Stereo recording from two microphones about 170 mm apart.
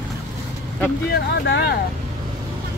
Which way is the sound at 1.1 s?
75° left (ahead or behind).